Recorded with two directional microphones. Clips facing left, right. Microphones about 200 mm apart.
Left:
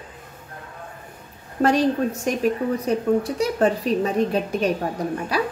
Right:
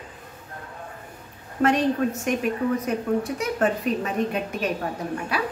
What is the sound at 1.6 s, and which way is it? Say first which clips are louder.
A woman's voice: left 2 dB; 35° left (ahead or behind).